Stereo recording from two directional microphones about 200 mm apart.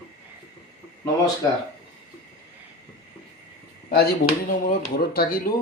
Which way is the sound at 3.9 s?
45° left (ahead or behind).